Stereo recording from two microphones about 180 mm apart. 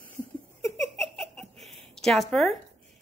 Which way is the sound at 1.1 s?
5° left (ahead or behind).